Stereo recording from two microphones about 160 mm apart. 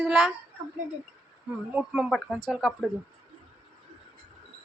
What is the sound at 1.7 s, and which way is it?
Speech, 5° right (ahead or behind).